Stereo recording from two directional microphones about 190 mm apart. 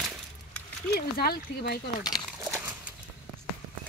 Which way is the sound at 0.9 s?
50° left (ahead or behind).